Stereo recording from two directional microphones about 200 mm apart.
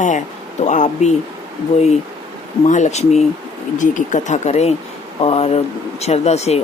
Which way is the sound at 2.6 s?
35° left (ahead or behind).